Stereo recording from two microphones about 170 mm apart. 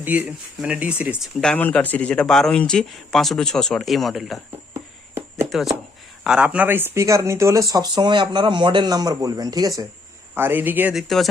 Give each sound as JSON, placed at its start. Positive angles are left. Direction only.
{"t": 0.0, "sound": "speech", "side_deg": -10}
{"t": 1.1, "sound": "speech", "side_deg": 5}
{"t": 4.7, "sound": "a sound", "side_deg": -15}
{"t": 6.2, "sound": "speech", "side_deg": -5}